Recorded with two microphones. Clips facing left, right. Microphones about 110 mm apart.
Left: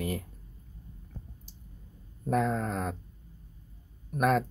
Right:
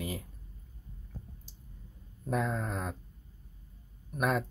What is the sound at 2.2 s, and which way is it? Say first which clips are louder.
Speech: left 4 dB; centre (ahead or behind).